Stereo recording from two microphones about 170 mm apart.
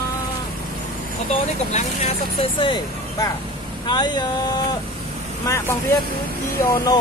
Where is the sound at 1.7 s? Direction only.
40° left (ahead or behind); by 7.0 s 25° left (ahead or behind).